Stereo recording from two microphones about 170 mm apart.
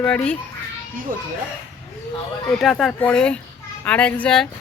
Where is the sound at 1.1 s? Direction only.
55° right (ahead or behind).